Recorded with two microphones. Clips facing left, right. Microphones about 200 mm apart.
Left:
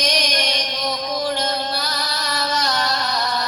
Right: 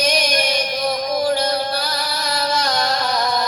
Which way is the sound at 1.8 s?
10° right (ahead or behind).